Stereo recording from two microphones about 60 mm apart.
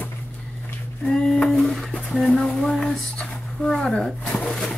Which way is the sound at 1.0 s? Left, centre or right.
Centre.